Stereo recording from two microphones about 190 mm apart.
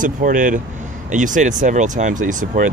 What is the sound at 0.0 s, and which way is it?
Speech, 45° right (ahead or behind).